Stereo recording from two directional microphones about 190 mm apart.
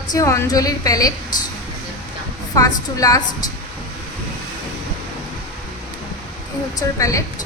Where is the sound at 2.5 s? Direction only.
20° left (ahead or behind).